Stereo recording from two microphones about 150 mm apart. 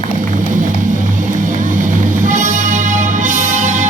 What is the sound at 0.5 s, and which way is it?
Music, 60° right (ahead or behind).